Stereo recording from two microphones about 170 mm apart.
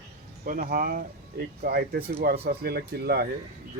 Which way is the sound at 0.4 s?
55° right (ahead or behind).